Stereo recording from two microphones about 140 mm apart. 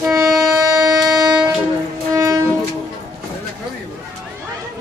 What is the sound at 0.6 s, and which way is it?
Music, 25° right (ahead or behind).